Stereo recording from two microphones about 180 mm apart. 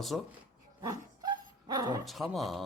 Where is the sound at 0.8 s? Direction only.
20° right (ahead or behind).